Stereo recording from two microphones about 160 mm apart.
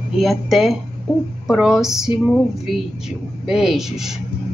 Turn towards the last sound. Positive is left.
turn(degrees=0)  # may be behind; listen again after turning